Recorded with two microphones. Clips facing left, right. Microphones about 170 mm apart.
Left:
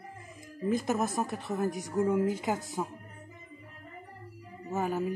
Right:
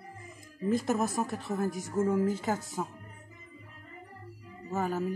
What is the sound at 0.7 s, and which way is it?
A woman's voice, 20° left (ahead or behind).